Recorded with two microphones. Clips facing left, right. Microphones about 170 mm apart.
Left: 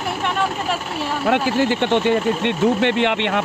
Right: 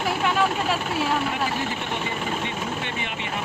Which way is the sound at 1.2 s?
75° left (ahead or behind).